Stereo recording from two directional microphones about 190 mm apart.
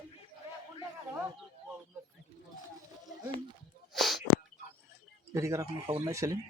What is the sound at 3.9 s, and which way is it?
Sneeze, centre (ahead or behind).